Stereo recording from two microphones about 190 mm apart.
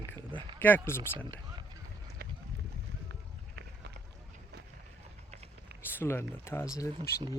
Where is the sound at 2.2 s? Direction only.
55° right (ahead or behind).